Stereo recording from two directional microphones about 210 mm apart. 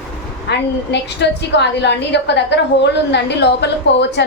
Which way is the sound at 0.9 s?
55° left (ahead or behind).